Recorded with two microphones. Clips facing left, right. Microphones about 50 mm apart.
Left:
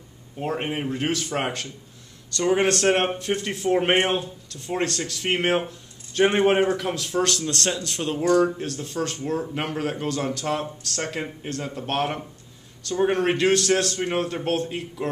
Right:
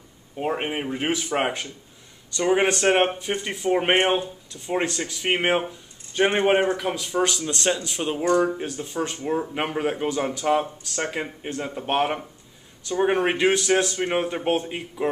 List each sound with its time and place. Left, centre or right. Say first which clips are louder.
0.4 s speech: right 1 dB; centre